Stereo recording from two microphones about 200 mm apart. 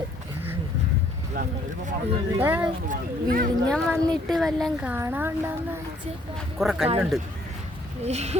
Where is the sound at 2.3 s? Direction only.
10° right (ahead or behind).